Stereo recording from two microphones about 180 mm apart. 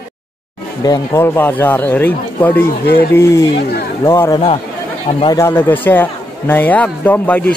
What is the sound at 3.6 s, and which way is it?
Speech, 60° left (ahead or behind).